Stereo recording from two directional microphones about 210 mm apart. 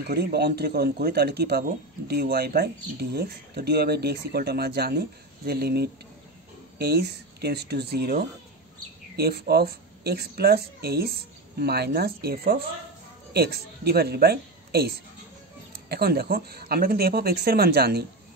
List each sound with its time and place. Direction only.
0.0 s speech: 50° right (ahead or behind)